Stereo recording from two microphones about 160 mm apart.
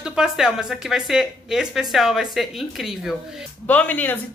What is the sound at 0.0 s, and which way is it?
A woman's voice, 5° right (ahead or behind).